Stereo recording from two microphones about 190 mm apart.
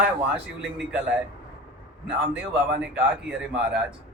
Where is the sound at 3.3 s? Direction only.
5° right (ahead or behind).